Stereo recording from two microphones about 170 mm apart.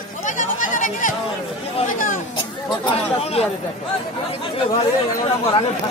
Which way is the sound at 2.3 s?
30° left (ahead or behind).